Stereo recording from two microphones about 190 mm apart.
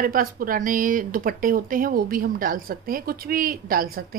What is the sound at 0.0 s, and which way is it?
A woman's voice, 50° right (ahead or behind).